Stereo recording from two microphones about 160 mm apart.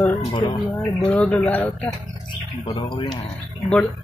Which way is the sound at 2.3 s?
30° left (ahead or behind).